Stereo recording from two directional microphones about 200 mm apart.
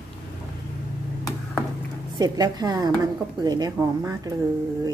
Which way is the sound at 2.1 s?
20° right (ahead or behind).